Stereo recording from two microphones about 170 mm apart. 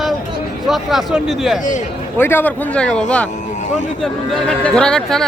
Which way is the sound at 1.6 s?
50° left (ahead or behind).